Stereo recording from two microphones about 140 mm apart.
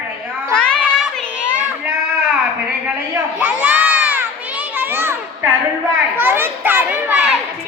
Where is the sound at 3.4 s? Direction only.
10° right (ahead or behind).